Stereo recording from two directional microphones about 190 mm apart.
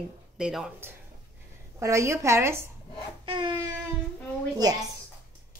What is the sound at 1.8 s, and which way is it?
Speech, 15° right (ahead or behind).